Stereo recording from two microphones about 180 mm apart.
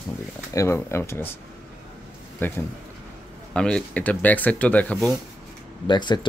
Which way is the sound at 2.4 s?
10° left (ahead or behind).